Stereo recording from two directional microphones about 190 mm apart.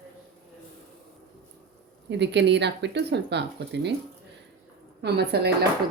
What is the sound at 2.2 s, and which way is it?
Speech, 65° right (ahead or behind).